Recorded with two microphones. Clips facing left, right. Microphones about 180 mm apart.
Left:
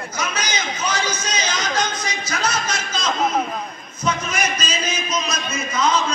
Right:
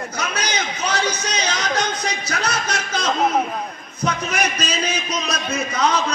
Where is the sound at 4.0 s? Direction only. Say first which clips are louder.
Right 1 dB; 65° right (ahead or behind).